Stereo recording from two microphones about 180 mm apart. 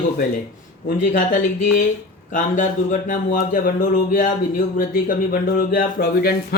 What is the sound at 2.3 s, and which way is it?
Speech, 45° left (ahead or behind).